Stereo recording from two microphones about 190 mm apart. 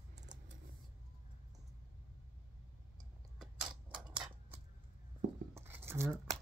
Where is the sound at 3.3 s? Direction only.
5° right (ahead or behind).